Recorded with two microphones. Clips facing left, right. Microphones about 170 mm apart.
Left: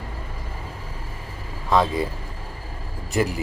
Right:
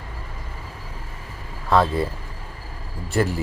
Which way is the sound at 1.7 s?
15° left (ahead or behind).